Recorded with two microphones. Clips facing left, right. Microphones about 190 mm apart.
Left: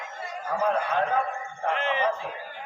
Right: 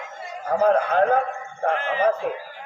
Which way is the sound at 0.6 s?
45° right (ahead or behind).